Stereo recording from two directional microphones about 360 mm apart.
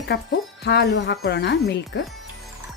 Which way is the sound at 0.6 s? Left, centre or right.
Left.